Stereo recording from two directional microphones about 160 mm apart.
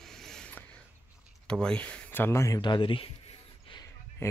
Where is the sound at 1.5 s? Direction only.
5° left (ahead or behind); by 3.8 s 35° left (ahead or behind).